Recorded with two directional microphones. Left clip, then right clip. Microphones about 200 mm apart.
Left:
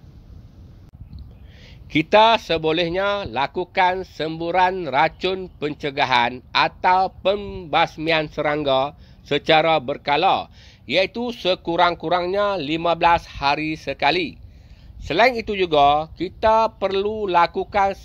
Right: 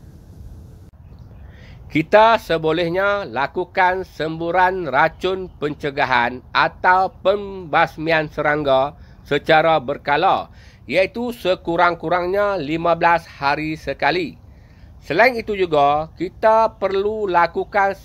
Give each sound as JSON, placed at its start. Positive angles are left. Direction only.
{"t": 1.9, "sound": "speech", "side_deg": 25}